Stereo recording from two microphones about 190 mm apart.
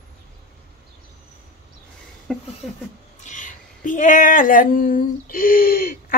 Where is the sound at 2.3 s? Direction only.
Centre (ahead or behind).